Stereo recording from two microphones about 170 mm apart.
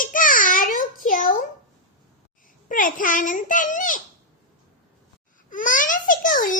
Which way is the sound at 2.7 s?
50° left (ahead or behind).